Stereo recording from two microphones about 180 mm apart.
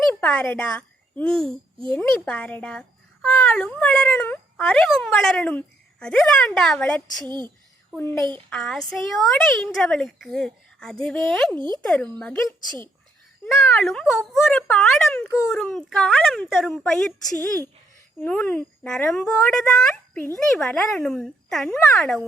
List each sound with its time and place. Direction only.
0.1 s a child's voice: 10° left (ahead or behind)
7.3 s speech: 25° right (ahead or behind)
8.4 s speech: 5° left (ahead or behind)
11.5 s speech: 25° right (ahead or behind)
11.8 s speech: 5° left (ahead or behind)
13.5 s speech: 5° left (ahead or behind)
18.2 s speech: 10° left (ahead or behind)